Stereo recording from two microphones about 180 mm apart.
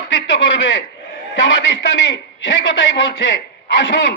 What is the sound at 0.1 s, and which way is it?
A man's voice, 90° left.